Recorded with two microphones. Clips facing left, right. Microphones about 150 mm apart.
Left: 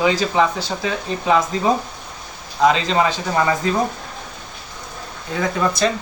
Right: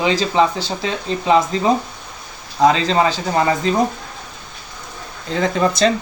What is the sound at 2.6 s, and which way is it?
Speech, 35° right (ahead or behind).